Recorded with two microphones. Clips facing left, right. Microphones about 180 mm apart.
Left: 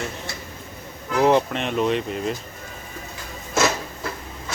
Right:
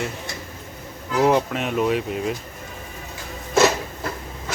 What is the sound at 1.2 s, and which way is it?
Speech, 5° right (ahead or behind).